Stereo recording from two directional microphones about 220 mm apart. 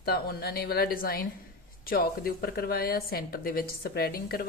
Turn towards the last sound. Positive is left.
turn(degrees=45)  # may be behind; listen again after turning